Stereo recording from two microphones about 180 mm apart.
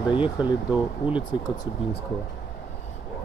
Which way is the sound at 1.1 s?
25° left (ahead or behind).